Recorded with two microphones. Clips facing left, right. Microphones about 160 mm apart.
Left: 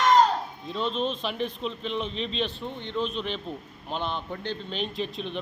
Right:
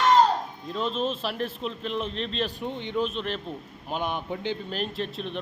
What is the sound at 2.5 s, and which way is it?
Speech, 15° right (ahead or behind).